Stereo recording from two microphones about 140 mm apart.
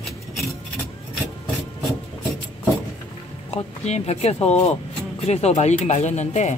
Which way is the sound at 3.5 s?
50° left (ahead or behind).